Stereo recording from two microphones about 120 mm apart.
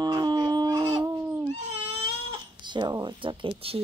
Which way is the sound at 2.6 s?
35° right (ahead or behind).